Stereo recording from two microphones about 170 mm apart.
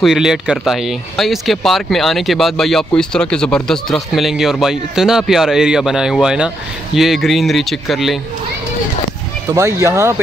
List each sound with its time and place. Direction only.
0.0 s speech: centre (ahead or behind)
9.5 s speech: 15° right (ahead or behind)